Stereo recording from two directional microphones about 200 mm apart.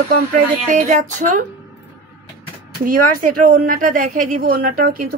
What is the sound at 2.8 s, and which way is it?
A woman's voice, 45° right (ahead or behind).